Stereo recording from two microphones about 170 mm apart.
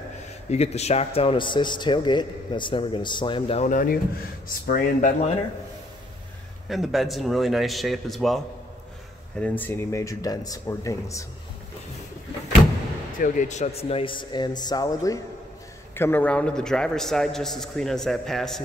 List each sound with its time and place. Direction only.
0.5 s a man's voice: 40° left (ahead or behind)
3.6 s speech: 55° left (ahead or behind)
6.7 s a man's voice: centre (ahead or behind)
9.4 s speech: 10° left (ahead or behind)
13.2 s a man's voice: 45° left (ahead or behind); by 18.6 s centre (ahead or behind)